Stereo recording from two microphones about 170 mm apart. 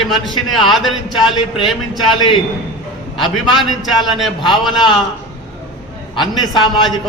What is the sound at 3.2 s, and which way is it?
Speech, centre (ahead or behind).